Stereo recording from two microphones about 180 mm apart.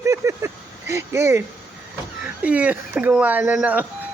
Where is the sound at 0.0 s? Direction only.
15° right (ahead or behind).